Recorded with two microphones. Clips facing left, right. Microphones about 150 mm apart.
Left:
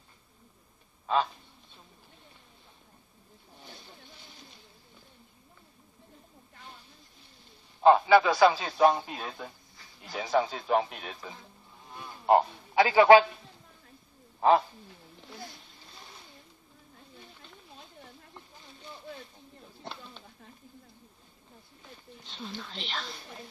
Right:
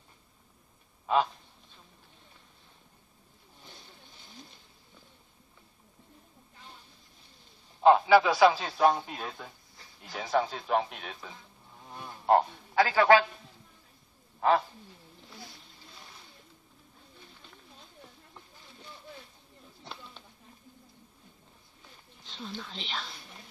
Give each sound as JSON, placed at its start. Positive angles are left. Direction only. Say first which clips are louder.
{"t": 1.0, "sound": "goose", "louder": "right 1 dB", "side_deg": -5}
{"t": 7.8, "sound": "a man's voice", "louder": "even", "side_deg": 0}
{"t": 12.0, "sound": "insect", "louder": "left 1 dB", "side_deg": 0}
{"t": 12.7, "sound": "a man's voice", "louder": "left 3 dB", "side_deg": 15}
{"t": 22.3, "sound": "a man's voice", "louder": "even", "side_deg": 0}